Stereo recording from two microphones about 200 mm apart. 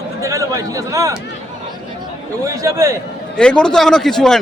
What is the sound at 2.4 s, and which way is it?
Speech, 15° right (ahead or behind).